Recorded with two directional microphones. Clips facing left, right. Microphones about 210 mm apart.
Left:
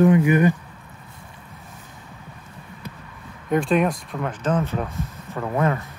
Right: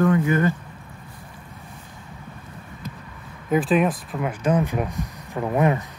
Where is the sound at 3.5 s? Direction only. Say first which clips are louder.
Even; centre (ahead or behind).